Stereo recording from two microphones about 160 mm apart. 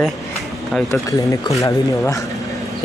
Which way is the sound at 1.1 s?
20° left (ahead or behind).